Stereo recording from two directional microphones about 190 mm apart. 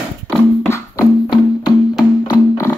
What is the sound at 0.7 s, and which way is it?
Music, 15° left (ahead or behind).